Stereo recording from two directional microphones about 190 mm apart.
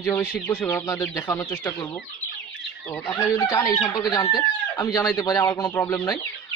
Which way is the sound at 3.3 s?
15° left (ahead or behind).